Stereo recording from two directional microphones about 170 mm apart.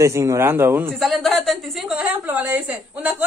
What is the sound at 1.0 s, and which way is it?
A woman's voice, centre (ahead or behind).